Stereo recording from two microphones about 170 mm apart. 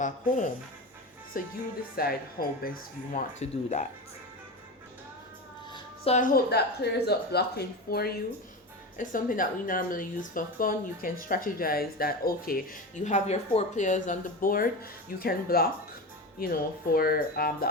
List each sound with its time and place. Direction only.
0.0 s speech: 50° left (ahead or behind)
2.0 s speech: 60° left (ahead or behind); by 3.8 s 45° left (ahead or behind)
6.1 s speech: 50° left (ahead or behind)
6.5 s speech: 75° left (ahead or behind)
9.0 s speech: 55° left (ahead or behind)